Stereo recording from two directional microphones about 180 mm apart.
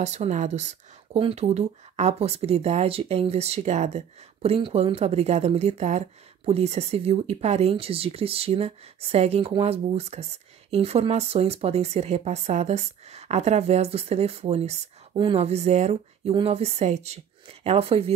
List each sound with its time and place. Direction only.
0.0 s speech: 40° right (ahead or behind)